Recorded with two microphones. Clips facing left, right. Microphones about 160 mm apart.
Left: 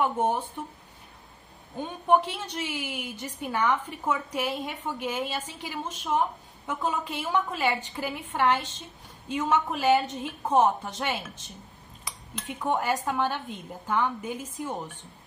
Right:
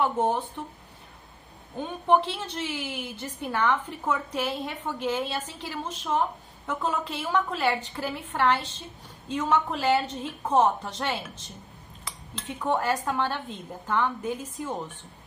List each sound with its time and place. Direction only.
0.0 s a woman's voice: 15° left (ahead or behind)
2.0 s a woman's voice: 15° left (ahead or behind)